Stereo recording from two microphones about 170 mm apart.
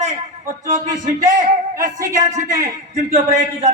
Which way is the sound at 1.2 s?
20° right (ahead or behind).